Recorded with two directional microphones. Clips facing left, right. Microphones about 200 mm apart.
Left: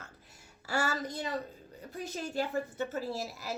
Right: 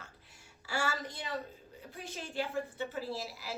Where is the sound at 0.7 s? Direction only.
40° left (ahead or behind).